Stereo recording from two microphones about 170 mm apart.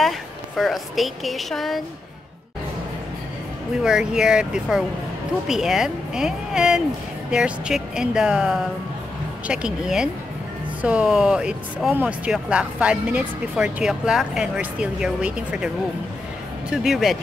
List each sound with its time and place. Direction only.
0.6 s speech: centre (ahead or behind)
3.8 s speech: 5° right (ahead or behind)
16.7 s speech: centre (ahead or behind)